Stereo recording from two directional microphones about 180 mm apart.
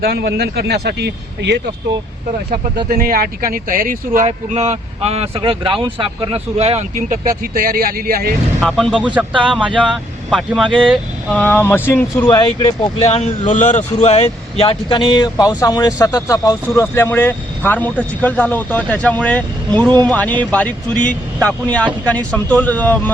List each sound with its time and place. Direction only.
0.0 s speech: 65° right (ahead or behind)
2.9 s speech: 55° right (ahead or behind)
4.3 s speech: 40° right (ahead or behind)
7.4 s speech: 55° right (ahead or behind)
8.6 s speech: centre (ahead or behind); by 12.7 s 20° left (ahead or behind)
13.0 s speech: 35° left (ahead or behind); by 23.1 s 10° left (ahead or behind)